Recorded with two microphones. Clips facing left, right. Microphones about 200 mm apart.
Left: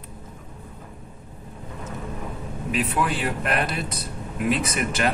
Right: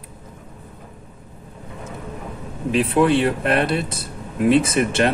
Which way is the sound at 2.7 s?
30° right (ahead or behind).